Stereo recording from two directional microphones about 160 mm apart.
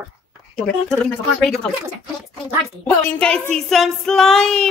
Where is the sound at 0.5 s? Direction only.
5° left (ahead or behind).